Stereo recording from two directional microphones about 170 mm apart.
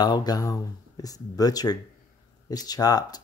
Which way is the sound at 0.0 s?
25° left (ahead or behind).